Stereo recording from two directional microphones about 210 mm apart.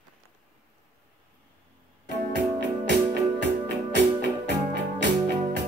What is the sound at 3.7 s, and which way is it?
Music, 55° right (ahead or behind).